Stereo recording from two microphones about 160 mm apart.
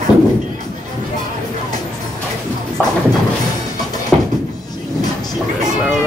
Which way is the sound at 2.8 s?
10° left (ahead or behind).